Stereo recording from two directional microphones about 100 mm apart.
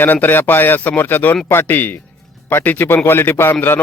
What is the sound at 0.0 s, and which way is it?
A man's voice, 20° left (ahead or behind).